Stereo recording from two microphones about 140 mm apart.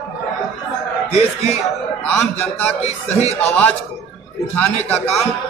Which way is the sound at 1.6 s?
5° left (ahead or behind).